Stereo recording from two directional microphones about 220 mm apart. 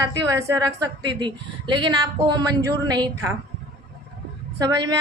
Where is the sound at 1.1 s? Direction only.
20° right (ahead or behind).